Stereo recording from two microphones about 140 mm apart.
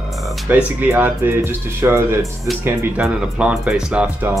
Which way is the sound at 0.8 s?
15° right (ahead or behind).